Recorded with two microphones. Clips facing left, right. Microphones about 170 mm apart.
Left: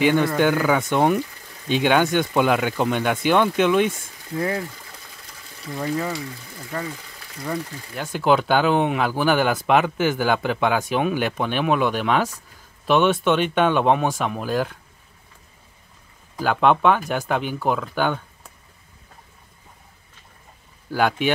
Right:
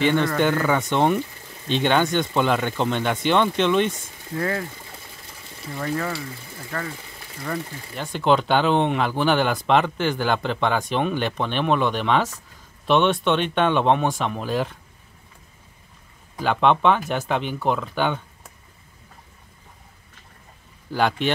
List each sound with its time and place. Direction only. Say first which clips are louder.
0.0 s speech: left 2 dB; 5° left (ahead or behind)
4.4 s speech: left 1 dB; 20° left (ahead or behind)
5.8 s speech: left 1 dB; 15° left (ahead or behind)
6.7 s speech: left 1 dB; 5° left (ahead or behind)
16.3 s speech: left 1 dB; 5° left (ahead or behind)
20.9 s speech: left 1 dB; 5° left (ahead or behind)